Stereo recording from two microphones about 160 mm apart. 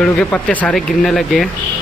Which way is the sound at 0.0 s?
10° left (ahead or behind).